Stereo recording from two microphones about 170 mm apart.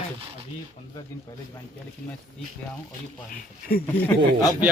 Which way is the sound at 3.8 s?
10° left (ahead or behind).